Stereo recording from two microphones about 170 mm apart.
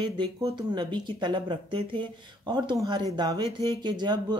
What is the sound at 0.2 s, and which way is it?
Speech, 25° right (ahead or behind).